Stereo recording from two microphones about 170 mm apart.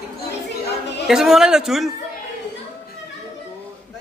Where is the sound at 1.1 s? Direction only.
Centre (ahead or behind).